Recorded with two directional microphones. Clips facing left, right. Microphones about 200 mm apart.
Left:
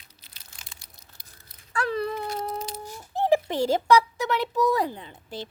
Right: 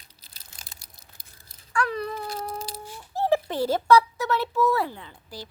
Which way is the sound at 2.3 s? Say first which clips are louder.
Left 2 dB; 30° right (ahead or behind).